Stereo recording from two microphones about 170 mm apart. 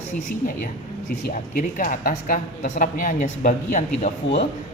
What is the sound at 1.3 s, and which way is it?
A man's voice, 50° left (ahead or behind).